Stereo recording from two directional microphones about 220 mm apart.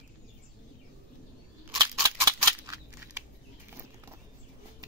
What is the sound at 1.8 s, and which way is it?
Scissors, 15° right (ahead or behind).